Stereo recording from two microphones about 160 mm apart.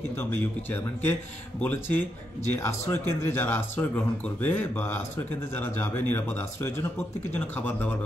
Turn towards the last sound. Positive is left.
turn(degrees=10)  # may be behind; listen again after turning